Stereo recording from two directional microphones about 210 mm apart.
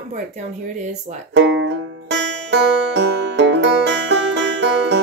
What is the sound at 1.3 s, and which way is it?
Music, 60° right (ahead or behind).